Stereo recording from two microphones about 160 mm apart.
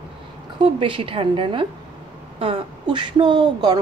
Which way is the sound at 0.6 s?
30° right (ahead or behind).